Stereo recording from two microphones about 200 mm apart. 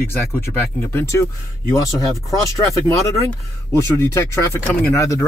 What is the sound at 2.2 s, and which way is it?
Speech, 15° left (ahead or behind).